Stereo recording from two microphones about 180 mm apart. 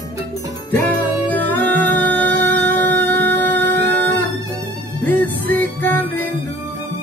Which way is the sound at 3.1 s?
65° right (ahead or behind).